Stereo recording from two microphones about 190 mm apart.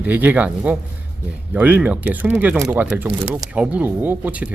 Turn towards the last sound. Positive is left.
turn(degrees=-10)  # may be behind; listen again after turning